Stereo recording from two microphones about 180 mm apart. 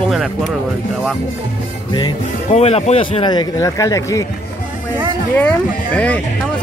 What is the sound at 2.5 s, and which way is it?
A man's voice, 35° left (ahead or behind).